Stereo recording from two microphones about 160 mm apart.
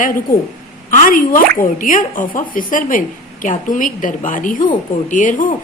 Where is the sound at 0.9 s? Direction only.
55° left (ahead or behind).